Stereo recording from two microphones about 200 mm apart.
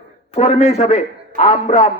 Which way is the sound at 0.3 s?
30° left (ahead or behind).